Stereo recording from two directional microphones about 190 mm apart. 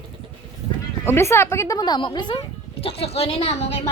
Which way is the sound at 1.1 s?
15° left (ahead or behind).